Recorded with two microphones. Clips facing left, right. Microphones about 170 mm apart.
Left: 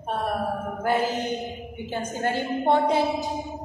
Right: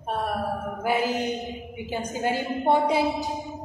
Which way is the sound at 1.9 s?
10° right (ahead or behind).